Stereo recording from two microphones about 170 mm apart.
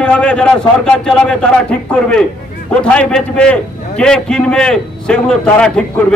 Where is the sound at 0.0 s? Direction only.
5° left (ahead or behind).